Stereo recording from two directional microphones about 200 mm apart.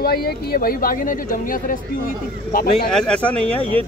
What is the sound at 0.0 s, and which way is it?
Speech, 50° left (ahead or behind).